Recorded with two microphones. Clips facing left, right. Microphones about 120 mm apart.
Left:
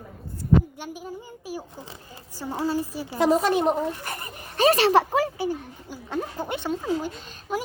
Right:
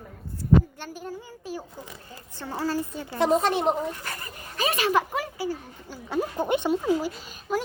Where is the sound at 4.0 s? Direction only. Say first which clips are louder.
Left 2 dB; 20° left (ahead or behind).